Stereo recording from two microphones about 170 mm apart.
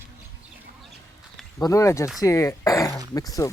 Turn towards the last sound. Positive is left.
turn(degrees=20)  # may be behind; listen again after turning